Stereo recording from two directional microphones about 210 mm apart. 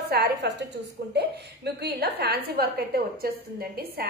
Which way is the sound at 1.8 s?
50° right (ahead or behind).